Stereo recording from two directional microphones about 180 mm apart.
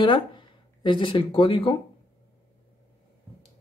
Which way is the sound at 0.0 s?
25° left (ahead or behind).